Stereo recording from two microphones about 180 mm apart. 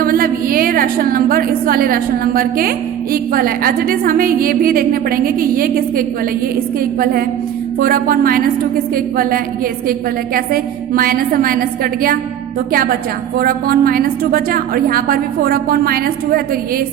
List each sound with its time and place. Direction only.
0.0 s a woman's voice: 55° right (ahead or behind)
10.3 s a woman's voice: 55° right (ahead or behind)